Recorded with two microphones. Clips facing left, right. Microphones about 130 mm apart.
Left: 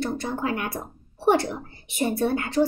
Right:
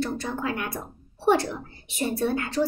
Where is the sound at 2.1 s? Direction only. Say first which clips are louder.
Left 1 dB; 60° left (ahead or behind).